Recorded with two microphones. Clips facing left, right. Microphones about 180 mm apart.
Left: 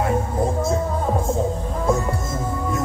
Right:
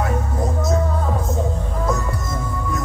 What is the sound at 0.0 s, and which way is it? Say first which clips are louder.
Music: left 2 dB; 30° left (ahead or behind).